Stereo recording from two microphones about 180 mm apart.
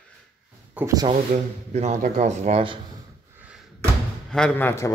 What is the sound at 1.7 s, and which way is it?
A man's voice, 40° right (ahead or behind).